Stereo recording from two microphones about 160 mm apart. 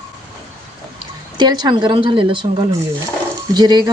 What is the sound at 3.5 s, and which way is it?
Speech, 25° right (ahead or behind).